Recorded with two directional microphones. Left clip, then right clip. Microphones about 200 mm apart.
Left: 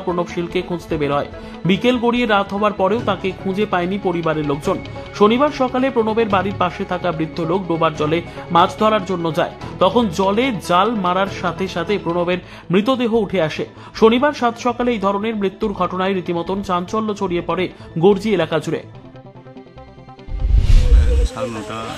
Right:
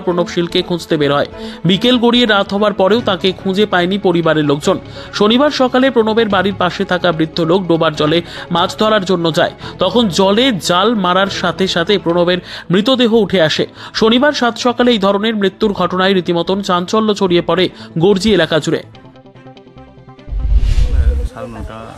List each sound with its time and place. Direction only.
0.1 s speech: 20° right (ahead or behind)